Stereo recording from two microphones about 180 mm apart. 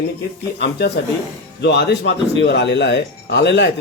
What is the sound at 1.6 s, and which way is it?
Speech, 70° left (ahead or behind).